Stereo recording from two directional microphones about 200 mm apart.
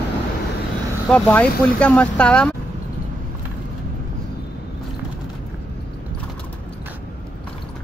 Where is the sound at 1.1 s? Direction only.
5° left (ahead or behind).